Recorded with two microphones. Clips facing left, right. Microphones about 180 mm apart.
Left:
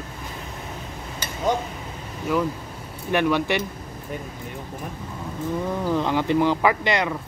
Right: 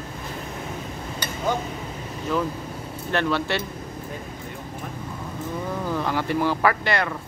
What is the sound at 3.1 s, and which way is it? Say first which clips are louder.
Speech: left 3 dB; 15° left (ahead or behind).